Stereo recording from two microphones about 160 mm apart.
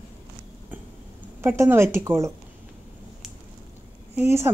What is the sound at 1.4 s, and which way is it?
Speech, 15° right (ahead or behind).